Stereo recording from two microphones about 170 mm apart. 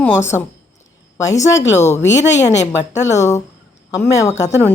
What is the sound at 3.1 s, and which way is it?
Speech, 15° left (ahead or behind).